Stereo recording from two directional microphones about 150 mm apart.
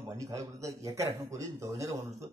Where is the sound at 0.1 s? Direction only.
20° right (ahead or behind).